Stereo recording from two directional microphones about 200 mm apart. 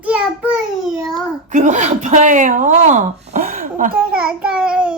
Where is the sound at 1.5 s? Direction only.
35° right (ahead or behind).